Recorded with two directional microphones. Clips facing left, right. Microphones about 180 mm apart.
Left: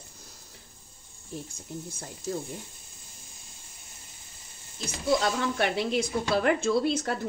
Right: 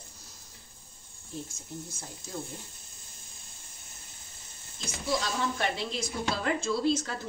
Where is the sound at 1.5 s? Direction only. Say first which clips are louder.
Left 3 dB; 60° left (ahead or behind).